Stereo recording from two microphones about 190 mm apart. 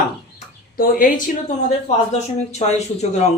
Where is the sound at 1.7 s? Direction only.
35° left (ahead or behind).